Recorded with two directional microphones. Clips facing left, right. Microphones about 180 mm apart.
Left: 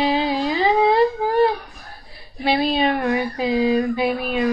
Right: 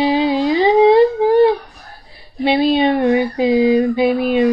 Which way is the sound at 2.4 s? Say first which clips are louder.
Right 5 dB; 20° right (ahead or behind).